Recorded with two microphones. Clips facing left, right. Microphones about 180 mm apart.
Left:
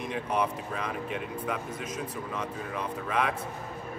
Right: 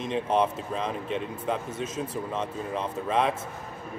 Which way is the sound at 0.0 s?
25° right (ahead or behind).